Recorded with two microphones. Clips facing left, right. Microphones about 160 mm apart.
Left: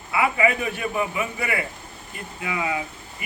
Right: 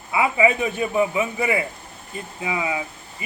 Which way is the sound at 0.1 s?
20° right (ahead or behind).